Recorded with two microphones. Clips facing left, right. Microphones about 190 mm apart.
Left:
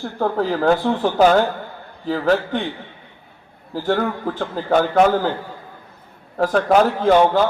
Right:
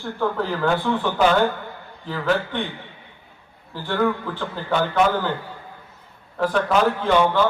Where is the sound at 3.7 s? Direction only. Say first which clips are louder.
Left 2 dB; 45° left (ahead or behind).